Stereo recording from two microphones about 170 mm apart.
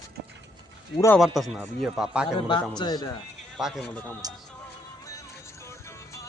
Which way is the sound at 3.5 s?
Centre (ahead or behind).